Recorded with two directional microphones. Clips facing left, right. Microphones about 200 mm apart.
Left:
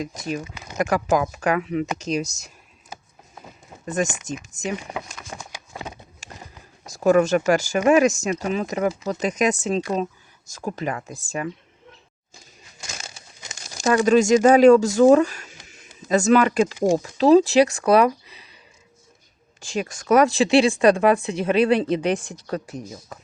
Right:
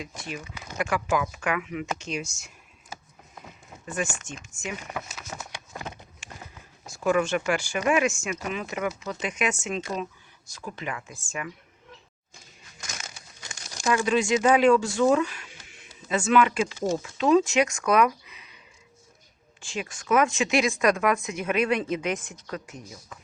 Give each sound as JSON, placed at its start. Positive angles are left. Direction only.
{"t": 0.0, "sound": "a woman's voice", "side_deg": 40}
{"t": 4.0, "sound": "a woman's voice", "side_deg": 40}
{"t": 5.0, "sound": "a sound", "side_deg": -5}
{"t": 6.2, "sound": "a sound", "side_deg": 40}
{"t": 6.8, "sound": "a woman's voice", "side_deg": 40}
{"t": 12.9, "sound": "crumpling", "side_deg": 25}
{"t": 13.8, "sound": "speech", "side_deg": 40}
{"t": 19.6, "sound": "a woman's voice", "side_deg": 40}